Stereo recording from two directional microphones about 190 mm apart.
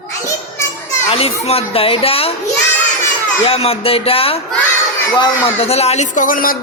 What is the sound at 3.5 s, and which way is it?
Speech, 30° left (ahead or behind).